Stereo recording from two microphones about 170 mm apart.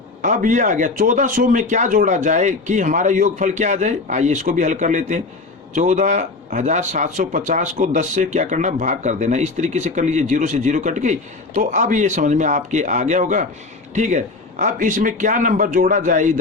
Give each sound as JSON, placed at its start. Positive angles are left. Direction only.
{"t": 0.2, "sound": "speech", "side_deg": -50}